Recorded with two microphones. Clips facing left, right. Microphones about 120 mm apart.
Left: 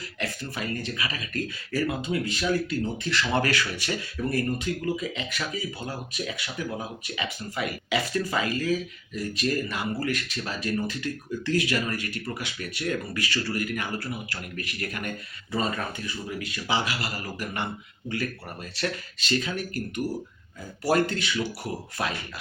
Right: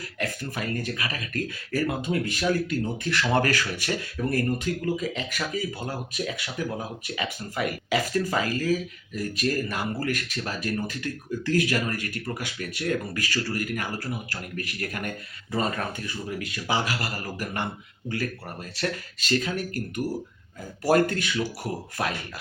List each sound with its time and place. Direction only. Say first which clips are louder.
0.2 s speech: right 2 dB; 45° right (ahead or behind)
18.8 s speech: right 1 dB; 45° right (ahead or behind)
20.8 s speech: right 2 dB; 50° right (ahead or behind)